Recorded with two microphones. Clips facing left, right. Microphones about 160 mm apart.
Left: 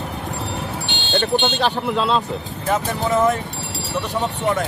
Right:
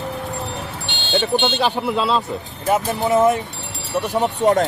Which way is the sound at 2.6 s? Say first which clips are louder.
Right 2 dB; 20° right (ahead or behind).